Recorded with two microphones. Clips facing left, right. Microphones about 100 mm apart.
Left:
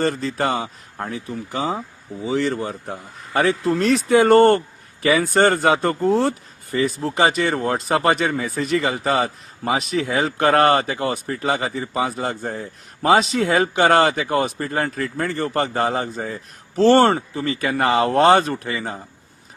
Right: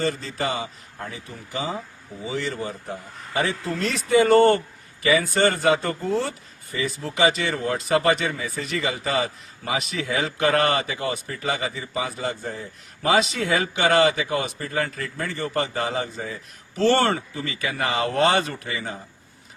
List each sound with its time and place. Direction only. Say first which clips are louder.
0.0 s a man's voice: left 5 dB; 50° left (ahead or behind)